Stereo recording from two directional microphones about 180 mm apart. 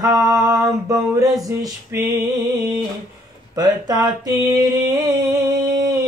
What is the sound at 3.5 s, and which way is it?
Mantra, 20° right (ahead or behind).